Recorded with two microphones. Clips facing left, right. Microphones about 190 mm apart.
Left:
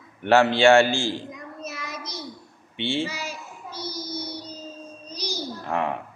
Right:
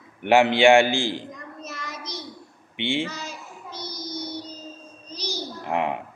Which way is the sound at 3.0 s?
10° left (ahead or behind).